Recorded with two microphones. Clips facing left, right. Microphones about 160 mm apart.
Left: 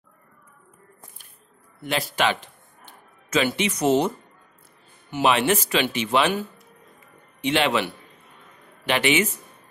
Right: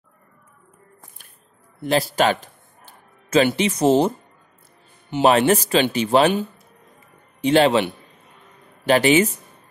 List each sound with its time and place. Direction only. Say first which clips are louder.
1.8 s speech: right 6 dB; 35° right (ahead or behind)
5.2 s speech: right 5 dB; 40° right (ahead or behind)
7.4 s speech: right 6 dB; 35° right (ahead or behind)
8.8 s speech: right 6 dB; 35° right (ahead or behind)